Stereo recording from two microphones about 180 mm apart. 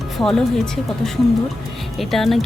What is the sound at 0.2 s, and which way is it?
Speech, 5° left (ahead or behind).